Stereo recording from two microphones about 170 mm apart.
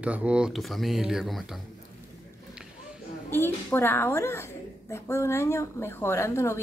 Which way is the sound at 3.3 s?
15° left (ahead or behind).